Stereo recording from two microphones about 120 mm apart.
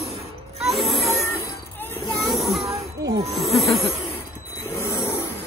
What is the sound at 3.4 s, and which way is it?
Snake, centre (ahead or behind).